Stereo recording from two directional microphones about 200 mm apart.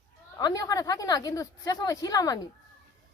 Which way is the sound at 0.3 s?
20° left (ahead or behind).